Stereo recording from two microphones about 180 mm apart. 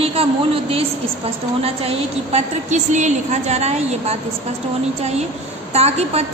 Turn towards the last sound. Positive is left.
turn(degrees=-35)  # may be behind; listen again after turning